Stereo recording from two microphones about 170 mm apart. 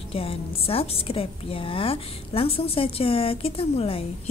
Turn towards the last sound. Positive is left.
turn(degrees=35)  # may be behind; listen again after turning